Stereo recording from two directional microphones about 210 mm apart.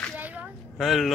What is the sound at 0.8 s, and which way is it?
Speech, centre (ahead or behind).